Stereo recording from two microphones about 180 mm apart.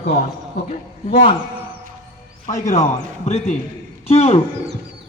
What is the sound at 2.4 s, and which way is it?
Speech, 40° left (ahead or behind).